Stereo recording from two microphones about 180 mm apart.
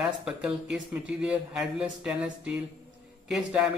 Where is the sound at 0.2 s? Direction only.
5° right (ahead or behind).